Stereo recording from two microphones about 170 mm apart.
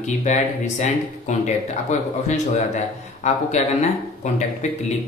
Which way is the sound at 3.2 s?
45° left (ahead or behind).